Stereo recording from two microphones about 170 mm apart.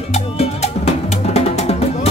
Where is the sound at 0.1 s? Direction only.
40° left (ahead or behind).